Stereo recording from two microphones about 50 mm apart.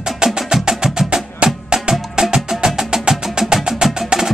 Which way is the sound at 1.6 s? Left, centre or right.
Centre.